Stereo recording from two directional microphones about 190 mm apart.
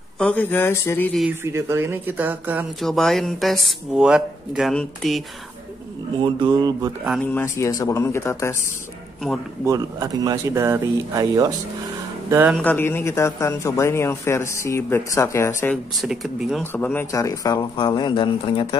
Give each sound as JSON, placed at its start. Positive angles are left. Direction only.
{"t": 0.2, "sound": "speech", "side_deg": 10}
{"t": 1.4, "sound": "speech", "side_deg": -15}
{"t": 6.2, "sound": "mantra", "side_deg": -20}
{"t": 7.3, "sound": "speech", "side_deg": 15}
{"t": 9.2, "sound": "speech", "side_deg": 0}
{"t": 9.7, "sound": "speech", "side_deg": -20}
{"t": 12.5, "sound": "speech", "side_deg": 10}
{"t": 16.0, "sound": "speech", "side_deg": 0}
{"t": 16.7, "sound": "speech", "side_deg": 10}